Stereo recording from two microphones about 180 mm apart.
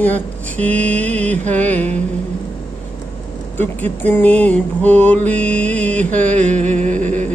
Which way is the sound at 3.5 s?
10° left (ahead or behind).